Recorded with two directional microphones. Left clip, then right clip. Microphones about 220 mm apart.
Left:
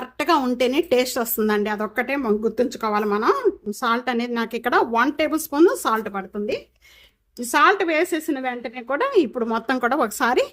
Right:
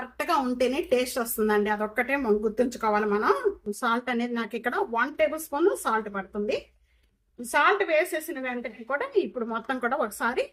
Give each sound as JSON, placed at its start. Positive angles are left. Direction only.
{"t": 0.2, "sound": "speech", "side_deg": 40}